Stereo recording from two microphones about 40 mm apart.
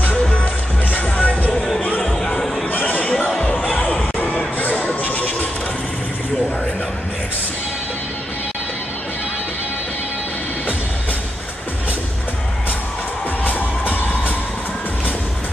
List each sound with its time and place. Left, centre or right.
0.1 s music: left
2.0 s music: centre
2.7 s a sound: left
13.4 s music: left